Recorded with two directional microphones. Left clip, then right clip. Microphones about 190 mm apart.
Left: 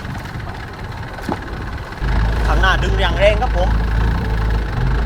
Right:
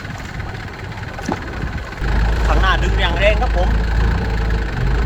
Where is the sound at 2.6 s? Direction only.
20° left (ahead or behind).